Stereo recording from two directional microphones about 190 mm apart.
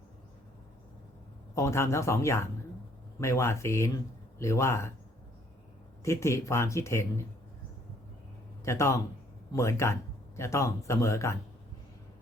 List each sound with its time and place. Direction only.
1.5 s speech: 15° left (ahead or behind)
6.0 s speech: 15° left (ahead or behind)
8.6 s speech: 15° left (ahead or behind)